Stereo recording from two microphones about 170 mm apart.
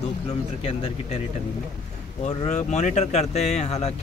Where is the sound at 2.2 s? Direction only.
40° left (ahead or behind).